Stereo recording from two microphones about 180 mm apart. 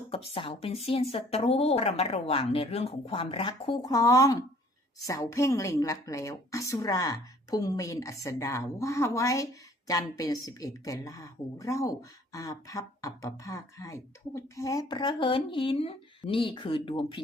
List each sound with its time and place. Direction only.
0.1 s a woman's voice: 30° left (ahead or behind)